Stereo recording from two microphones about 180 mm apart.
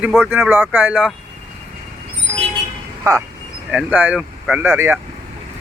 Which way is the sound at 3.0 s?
15° right (ahead or behind).